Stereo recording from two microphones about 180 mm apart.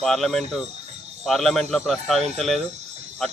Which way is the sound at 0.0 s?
Centre (ahead or behind).